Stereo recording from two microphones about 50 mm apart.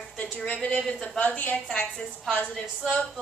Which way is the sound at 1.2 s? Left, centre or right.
Left.